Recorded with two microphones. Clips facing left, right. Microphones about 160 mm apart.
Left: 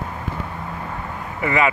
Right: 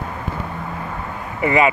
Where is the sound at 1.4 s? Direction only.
20° right (ahead or behind).